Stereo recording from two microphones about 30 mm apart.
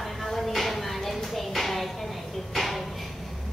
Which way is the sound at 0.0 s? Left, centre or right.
Centre.